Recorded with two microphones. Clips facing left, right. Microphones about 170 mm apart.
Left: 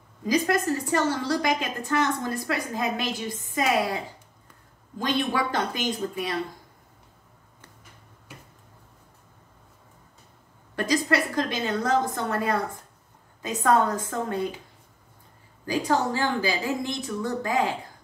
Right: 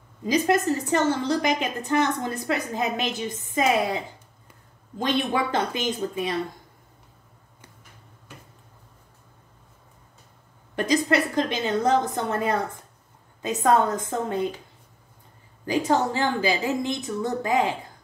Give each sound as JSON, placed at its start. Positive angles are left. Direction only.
{"t": 0.3, "sound": "a woman's voice", "side_deg": -20}
{"t": 10.8, "sound": "a woman's voice", "side_deg": -20}
{"t": 15.6, "sound": "a woman's voice", "side_deg": -20}